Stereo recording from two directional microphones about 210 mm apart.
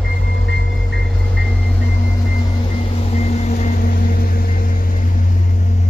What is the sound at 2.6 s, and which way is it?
Vehicle, 30° left (ahead or behind).